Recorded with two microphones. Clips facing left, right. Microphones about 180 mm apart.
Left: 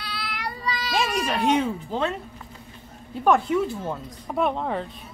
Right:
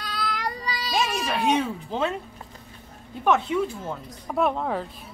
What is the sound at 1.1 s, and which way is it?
Speech, 10° right (ahead or behind).